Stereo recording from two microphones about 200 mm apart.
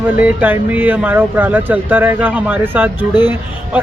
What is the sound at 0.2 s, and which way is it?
Speech, 10° right (ahead or behind).